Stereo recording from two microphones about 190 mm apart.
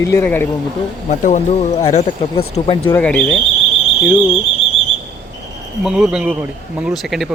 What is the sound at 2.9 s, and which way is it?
Speech, 10° left (ahead or behind).